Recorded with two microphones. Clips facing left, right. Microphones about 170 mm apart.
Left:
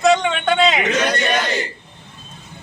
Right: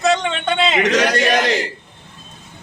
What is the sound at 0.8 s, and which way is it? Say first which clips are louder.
Speech: right 3 dB; 90° right.